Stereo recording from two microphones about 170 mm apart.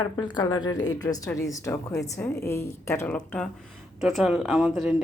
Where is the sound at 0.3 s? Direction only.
25° left (ahead or behind).